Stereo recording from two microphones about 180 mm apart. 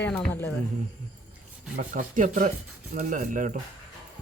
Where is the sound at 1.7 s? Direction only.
45° right (ahead or behind).